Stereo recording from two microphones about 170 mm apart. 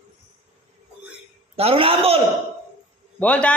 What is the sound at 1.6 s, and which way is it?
Speech, 35° right (ahead or behind).